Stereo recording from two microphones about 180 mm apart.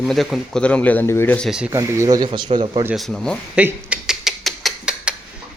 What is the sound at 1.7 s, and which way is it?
Speech, 15° right (ahead or behind).